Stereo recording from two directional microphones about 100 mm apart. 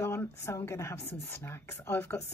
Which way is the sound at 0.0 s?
25° left (ahead or behind).